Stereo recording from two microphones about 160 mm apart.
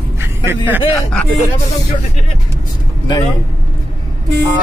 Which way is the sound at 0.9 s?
Centre (ahead or behind).